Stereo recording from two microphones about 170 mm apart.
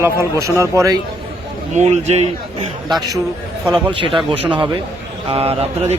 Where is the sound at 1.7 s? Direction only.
40° right (ahead or behind).